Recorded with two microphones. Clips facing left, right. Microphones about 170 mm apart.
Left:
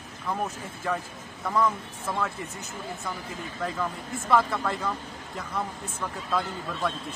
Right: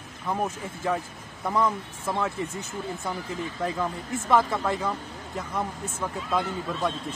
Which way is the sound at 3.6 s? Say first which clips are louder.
Right 1 dB; 20° right (ahead or behind).